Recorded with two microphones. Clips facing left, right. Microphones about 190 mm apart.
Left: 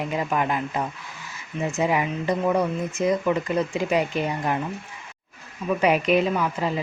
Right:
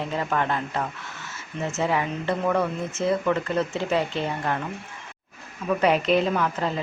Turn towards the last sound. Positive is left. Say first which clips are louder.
# left 1 dB
turn(degrees=10)  # may be behind; listen again after turning